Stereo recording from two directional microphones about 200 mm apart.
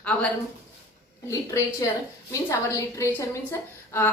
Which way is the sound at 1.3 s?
15° left (ahead or behind).